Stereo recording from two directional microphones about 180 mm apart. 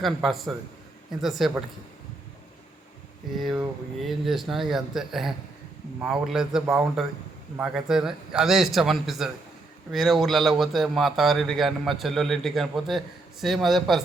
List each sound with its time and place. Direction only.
0.0 s a man's voice: centre (ahead or behind)
3.3 s a man's voice: centre (ahead or behind)